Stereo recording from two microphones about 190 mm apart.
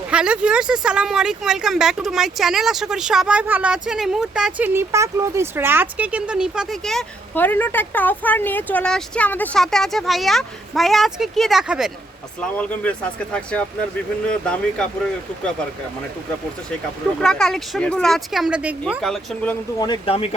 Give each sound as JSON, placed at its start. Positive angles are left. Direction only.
{"t": 0.1, "sound": "speech", "side_deg": -5}
{"t": 12.4, "sound": "speech", "side_deg": 5}
{"t": 17.2, "sound": "speech", "side_deg": 5}
{"t": 19.8, "sound": "a man's voice", "side_deg": 25}